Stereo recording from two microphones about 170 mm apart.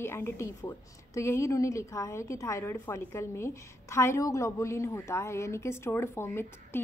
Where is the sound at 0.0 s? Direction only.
15° left (ahead or behind).